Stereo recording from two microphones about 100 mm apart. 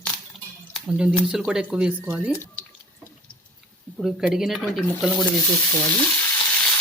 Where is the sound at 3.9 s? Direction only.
5° right (ahead or behind).